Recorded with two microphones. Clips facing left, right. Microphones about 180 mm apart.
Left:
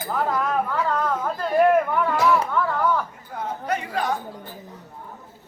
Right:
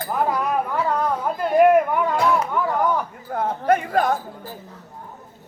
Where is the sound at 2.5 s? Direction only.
15° right (ahead or behind).